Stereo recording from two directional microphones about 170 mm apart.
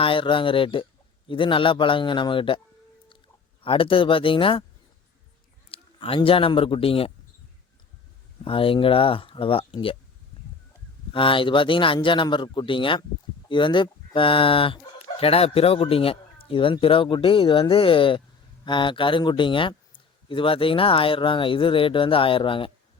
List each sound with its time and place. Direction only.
0.0 s a man's voice: 30° left (ahead or behind)
3.6 s speech: 30° left (ahead or behind)
5.6 s speech: 35° left (ahead or behind)
8.4 s speech: 30° left (ahead or behind)
11.1 s a man's voice: 30° left (ahead or behind)